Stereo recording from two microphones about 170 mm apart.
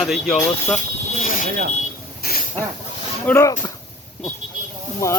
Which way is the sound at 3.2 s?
15° left (ahead or behind).